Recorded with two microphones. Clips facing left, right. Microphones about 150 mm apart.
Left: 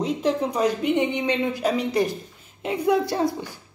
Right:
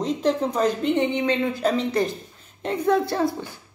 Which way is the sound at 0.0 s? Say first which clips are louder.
Right 1 dB; 5° left (ahead or behind).